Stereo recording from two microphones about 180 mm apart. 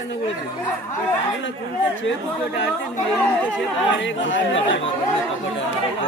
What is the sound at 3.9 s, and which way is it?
Speech, 90° left.